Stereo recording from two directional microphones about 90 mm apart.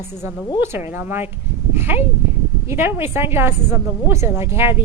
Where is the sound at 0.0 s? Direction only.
25° right (ahead or behind).